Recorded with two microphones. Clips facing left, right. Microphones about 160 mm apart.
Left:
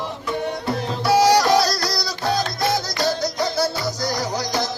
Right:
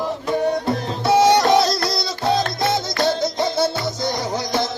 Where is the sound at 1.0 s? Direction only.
25° right (ahead or behind).